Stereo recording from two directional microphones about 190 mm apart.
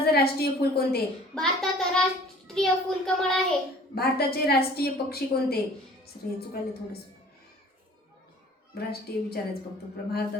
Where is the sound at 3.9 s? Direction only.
55° left (ahead or behind).